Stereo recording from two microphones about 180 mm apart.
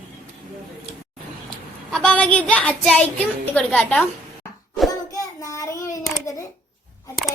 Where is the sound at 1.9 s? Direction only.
5° left (ahead or behind).